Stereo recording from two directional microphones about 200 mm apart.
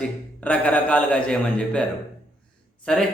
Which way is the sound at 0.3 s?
5° left (ahead or behind).